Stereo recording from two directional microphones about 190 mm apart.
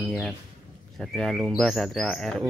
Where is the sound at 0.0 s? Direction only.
Centre (ahead or behind).